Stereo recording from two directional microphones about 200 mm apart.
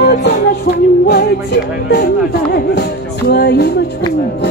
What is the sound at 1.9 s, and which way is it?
Speech, 55° left (ahead or behind).